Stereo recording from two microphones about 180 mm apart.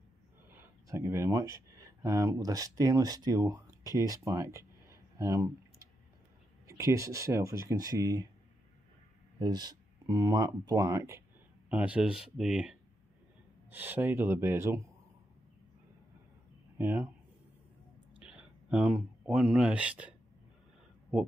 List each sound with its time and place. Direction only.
0.5 s speech: 15° right (ahead or behind)
6.7 s speech: 15° right (ahead or behind)
9.4 s speech: 20° right (ahead or behind)
16.7 s speech: 10° right (ahead or behind)
18.7 s speech: 5° right (ahead or behind)